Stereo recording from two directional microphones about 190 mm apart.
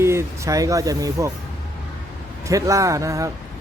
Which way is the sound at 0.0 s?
15° right (ahead or behind).